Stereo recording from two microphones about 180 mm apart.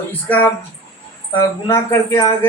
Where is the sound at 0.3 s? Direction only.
10° left (ahead or behind).